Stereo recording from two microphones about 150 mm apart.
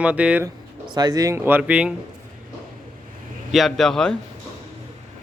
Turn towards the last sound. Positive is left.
turn(degrees=5)  # may be behind; listen again after turning